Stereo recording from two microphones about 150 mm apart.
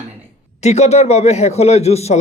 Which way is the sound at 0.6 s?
45° left (ahead or behind).